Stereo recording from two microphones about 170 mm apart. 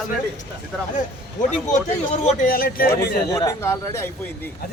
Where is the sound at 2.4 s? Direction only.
55° left (ahead or behind).